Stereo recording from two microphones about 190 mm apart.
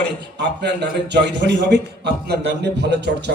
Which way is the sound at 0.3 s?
65° right (ahead or behind).